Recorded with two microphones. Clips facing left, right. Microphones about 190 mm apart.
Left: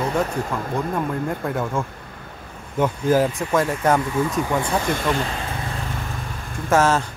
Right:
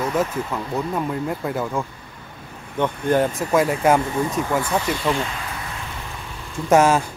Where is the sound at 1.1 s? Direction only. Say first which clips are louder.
Even; 5° right (ahead or behind).